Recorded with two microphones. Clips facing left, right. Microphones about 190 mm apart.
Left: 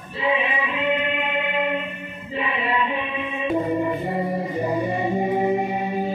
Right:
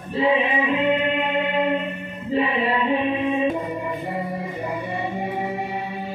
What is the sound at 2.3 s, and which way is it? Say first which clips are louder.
Chant: right 4 dB; 35° right (ahead or behind).